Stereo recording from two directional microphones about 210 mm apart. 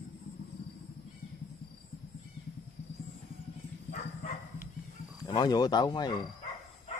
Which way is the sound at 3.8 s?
40° left (ahead or behind).